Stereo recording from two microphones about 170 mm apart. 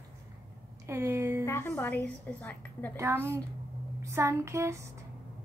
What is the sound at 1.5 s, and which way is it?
A woman's voice, 15° left (ahead or behind).